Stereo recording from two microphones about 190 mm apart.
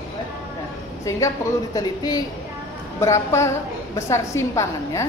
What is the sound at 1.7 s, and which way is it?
A woman's voice, 20° left (ahead or behind).